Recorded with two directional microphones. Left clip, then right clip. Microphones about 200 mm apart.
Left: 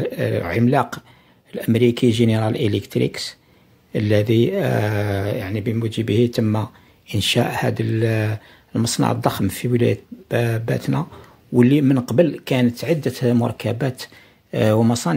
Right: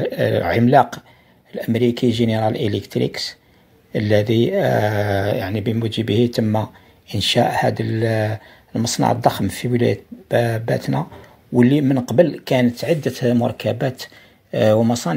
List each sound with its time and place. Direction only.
0.0 s speech: 10° left (ahead or behind)
1.5 s speech: 30° left (ahead or behind)